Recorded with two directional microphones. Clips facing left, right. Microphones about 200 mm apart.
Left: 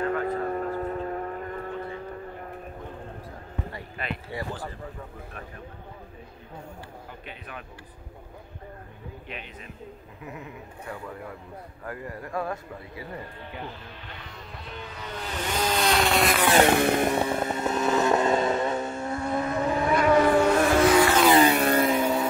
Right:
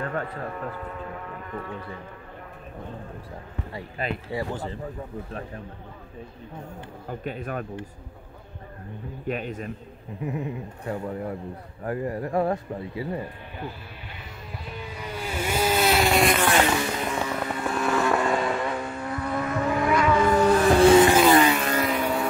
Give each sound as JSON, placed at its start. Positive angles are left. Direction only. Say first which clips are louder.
{"t": 0.5, "sound": "a sound", "louder": "left 5 dB", "side_deg": 40}
{"t": 3.7, "sound": "speech", "louder": "right 8 dB", "side_deg": -40}
{"t": 4.4, "sound": "speech", "louder": "right 4 dB", "side_deg": -25}
{"t": 7.1, "sound": "speech", "louder": "right 10 dB", "side_deg": -45}
{"t": 9.3, "sound": "speech", "louder": "right 14 dB", "side_deg": -45}
{"t": 10.2, "sound": "speech", "louder": "right 9 dB", "side_deg": -25}
{"t": 14.7, "sound": "music", "louder": "right 2 dB", "side_deg": -10}
{"t": 16.6, "sound": "music", "louder": "left 5 dB", "side_deg": 55}
{"t": 17.2, "sound": "vehicle", "louder": "left 2 dB", "side_deg": 25}
{"t": 20.1, "sound": "music", "louder": "left 4 dB", "side_deg": 55}
{"t": 20.6, "sound": "vehicle", "louder": "right 4 dB", "side_deg": -30}
{"t": 21.5, "sound": "vehicle", "louder": "left 3 dB", "side_deg": 35}